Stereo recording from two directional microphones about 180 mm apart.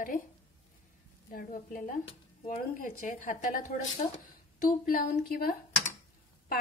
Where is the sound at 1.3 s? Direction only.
50° left (ahead or behind).